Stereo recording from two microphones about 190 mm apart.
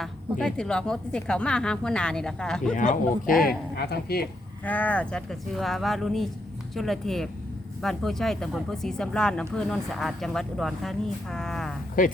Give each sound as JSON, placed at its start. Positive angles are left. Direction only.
{"t": 0.0, "sound": "speech", "side_deg": 5}
{"t": 2.7, "sound": "speech", "side_deg": 45}
{"t": 3.8, "sound": "a woman's voice", "side_deg": 60}
{"t": 4.6, "sound": "speech", "side_deg": 10}